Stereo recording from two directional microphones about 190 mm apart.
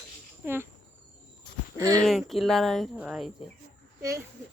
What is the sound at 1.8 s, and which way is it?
Speech, 20° right (ahead or behind).